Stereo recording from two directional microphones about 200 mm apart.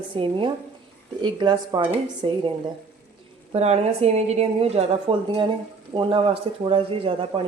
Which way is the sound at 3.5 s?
30° right (ahead or behind).